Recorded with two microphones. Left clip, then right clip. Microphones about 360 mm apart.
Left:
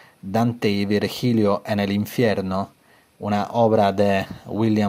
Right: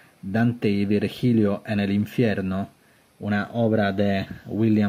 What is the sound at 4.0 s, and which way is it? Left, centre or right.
Speech, centre.